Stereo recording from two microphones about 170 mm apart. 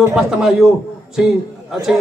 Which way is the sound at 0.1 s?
5° right (ahead or behind).